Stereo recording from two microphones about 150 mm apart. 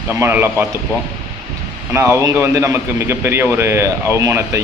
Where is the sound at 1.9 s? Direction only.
20° right (ahead or behind).